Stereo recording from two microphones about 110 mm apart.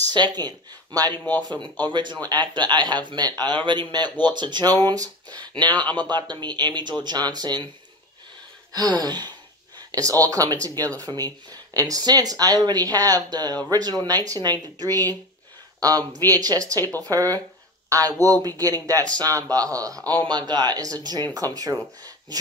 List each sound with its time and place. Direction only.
0.0 s speech: 40° right (ahead or behind)
5.7 s speech: 15° left (ahead or behind)
5.9 s speech: 40° right (ahead or behind)
8.7 s speech: 35° right (ahead or behind)
16.3 s speech: 35° right (ahead or behind)